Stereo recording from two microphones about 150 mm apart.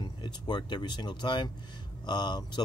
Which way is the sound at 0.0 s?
30° left (ahead or behind).